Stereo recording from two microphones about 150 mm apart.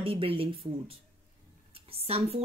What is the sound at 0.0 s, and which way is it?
Speech, 35° right (ahead or behind).